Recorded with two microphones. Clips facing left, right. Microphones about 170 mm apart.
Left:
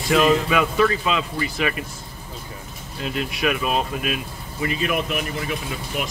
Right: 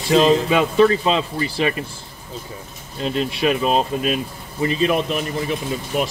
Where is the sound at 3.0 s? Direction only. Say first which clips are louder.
Right 4 dB; 30° right (ahead or behind).